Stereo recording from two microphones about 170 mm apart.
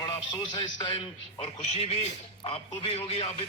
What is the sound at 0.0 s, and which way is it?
A man's voice, 25° left (ahead or behind).